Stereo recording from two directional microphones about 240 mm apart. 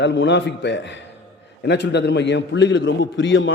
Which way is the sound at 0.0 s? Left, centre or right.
Left.